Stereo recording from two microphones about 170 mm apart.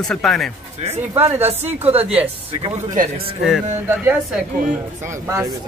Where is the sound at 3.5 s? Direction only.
10° right (ahead or behind).